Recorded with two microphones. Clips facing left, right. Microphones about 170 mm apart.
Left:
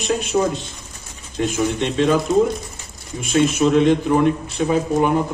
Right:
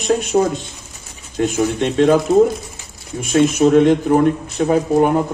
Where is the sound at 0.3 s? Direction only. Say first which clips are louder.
Right 3 dB; 50° right (ahead or behind).